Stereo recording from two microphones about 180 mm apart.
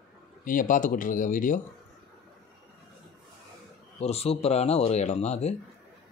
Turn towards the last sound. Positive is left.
turn(degrees=35)  # may be behind; listen again after turning